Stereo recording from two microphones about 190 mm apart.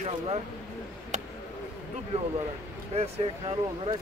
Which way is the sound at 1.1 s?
40° right (ahead or behind).